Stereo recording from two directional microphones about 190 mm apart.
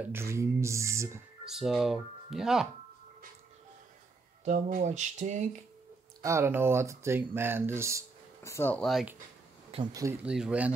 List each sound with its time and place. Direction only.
0.0 s speech: 15° right (ahead or behind)
1.4 s speech: centre (ahead or behind)
4.5 s speech: 40° right (ahead or behind)
6.2 s speech: 15° right (ahead or behind)
8.4 s speech: 15° left (ahead or behind)
9.7 s speech: 30° right (ahead or behind)
10.2 s speech: 5° right (ahead or behind)